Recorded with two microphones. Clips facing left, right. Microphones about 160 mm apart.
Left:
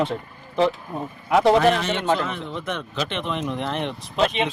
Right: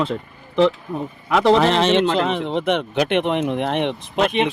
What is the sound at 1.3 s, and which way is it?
A man's voice, 90° right.